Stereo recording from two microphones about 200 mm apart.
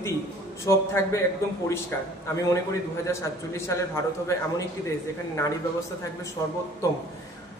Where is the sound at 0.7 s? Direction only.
15° left (ahead or behind).